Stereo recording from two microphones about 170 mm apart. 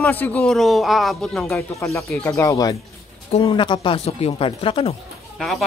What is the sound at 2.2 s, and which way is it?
Speech, 15° left (ahead or behind).